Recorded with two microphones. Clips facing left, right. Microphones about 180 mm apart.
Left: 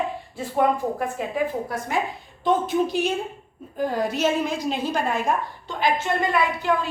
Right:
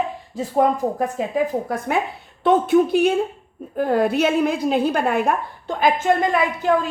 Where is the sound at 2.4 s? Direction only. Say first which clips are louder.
Right 6 dB; 65° right (ahead or behind).